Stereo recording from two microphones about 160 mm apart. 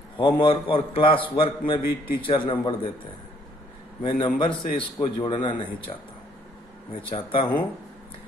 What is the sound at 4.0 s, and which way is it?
A man's voice, 30° left (ahead or behind).